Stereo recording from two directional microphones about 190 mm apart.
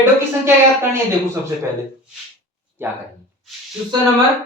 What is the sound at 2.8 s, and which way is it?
Speech, 10° right (ahead or behind).